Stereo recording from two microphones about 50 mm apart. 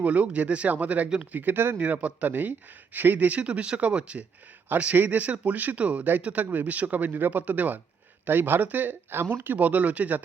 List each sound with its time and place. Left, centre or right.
0.0 s a man's voice: right
1.8 s a man's voice: right